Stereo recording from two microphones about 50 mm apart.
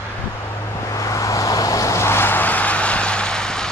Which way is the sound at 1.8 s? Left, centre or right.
Left.